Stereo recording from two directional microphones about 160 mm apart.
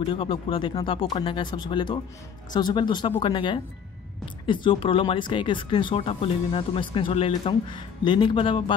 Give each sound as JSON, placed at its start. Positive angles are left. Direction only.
{"t": 0.1, "sound": "speech", "side_deg": 30}